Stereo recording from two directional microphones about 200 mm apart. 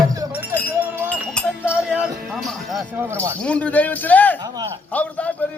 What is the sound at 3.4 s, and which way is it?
Speech, 5° left (ahead or behind).